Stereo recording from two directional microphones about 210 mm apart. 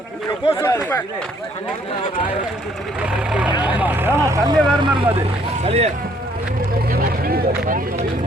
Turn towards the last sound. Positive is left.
turn(degrees=-45)  # may be behind; listen again after turning